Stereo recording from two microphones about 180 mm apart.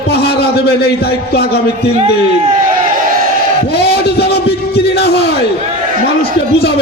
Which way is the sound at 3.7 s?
65° left (ahead or behind).